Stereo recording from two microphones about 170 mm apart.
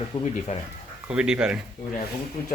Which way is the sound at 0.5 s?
40° left (ahead or behind).